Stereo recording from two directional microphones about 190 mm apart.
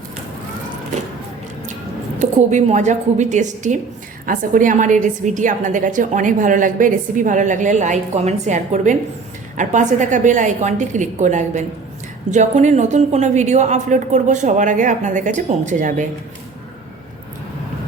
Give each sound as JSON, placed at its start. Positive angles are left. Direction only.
{"t": 2.1, "sound": "a woman's voice", "side_deg": -35}